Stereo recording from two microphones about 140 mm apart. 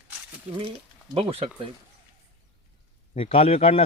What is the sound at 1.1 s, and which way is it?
Speech, 40° right (ahead or behind).